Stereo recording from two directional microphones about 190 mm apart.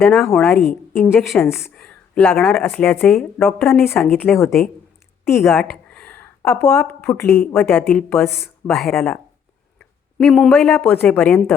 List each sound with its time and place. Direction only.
0.0 s speech: centre (ahead or behind)
0.3 s speech: 10° left (ahead or behind)
1.1 s speech: centre (ahead or behind)
5.5 s speech: 10° left (ahead or behind)